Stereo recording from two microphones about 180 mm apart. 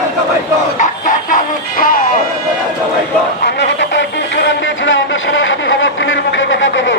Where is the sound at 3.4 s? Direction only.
75° left (ahead or behind).